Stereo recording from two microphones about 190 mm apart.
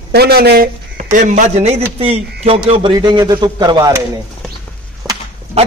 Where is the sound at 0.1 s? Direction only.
55° right (ahead or behind).